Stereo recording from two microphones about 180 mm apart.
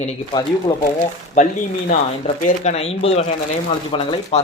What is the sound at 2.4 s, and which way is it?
Speech, 40° left (ahead or behind).